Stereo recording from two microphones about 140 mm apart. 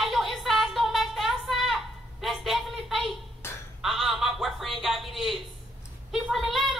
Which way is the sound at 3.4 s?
20° left (ahead or behind).